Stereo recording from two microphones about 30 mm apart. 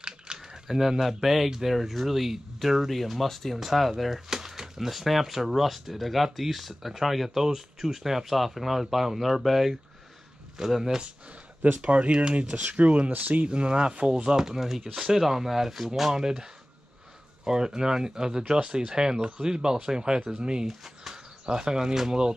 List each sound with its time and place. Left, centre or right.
0.0 s a sound: right
0.7 s speech: centre
4.3 s speech: centre
11.8 s speech: right
13.2 s speech: right
13.5 s speech: right
14.4 s speech: centre
17.5 s speech: right
20.6 s speech: centre
21.5 s speech: right